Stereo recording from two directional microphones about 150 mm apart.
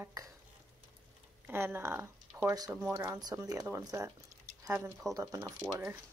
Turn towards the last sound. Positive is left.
turn(degrees=-20)  # may be behind; listen again after turning